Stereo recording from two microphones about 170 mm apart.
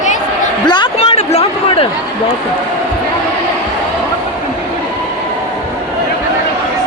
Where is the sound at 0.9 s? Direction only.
35° left (ahead or behind).